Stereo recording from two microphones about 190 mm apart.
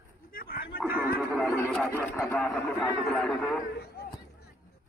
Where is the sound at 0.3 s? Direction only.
50° left (ahead or behind).